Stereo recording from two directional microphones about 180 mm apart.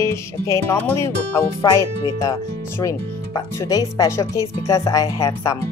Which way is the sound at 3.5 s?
20° left (ahead or behind).